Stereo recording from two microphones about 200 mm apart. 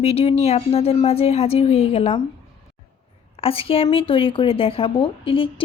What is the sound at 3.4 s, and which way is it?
Speech, 30° left (ahead or behind).